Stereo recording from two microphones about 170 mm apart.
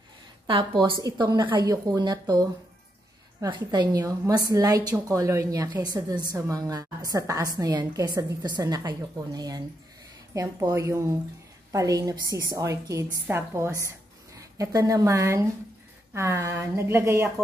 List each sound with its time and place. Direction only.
0.5 s a woman's voice: 30° right (ahead or behind)